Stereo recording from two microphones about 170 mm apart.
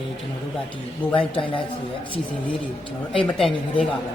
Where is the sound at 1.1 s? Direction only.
30° left (ahead or behind).